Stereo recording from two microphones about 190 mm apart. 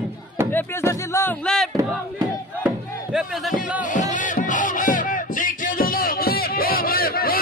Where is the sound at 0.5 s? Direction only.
15° left (ahead or behind).